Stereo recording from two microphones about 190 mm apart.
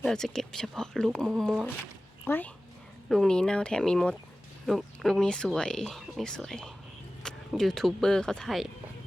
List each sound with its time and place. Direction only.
0.0 s speech: 5° left (ahead or behind)